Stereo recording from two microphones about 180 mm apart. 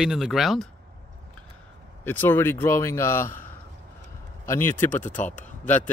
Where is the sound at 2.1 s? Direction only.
10° left (ahead or behind).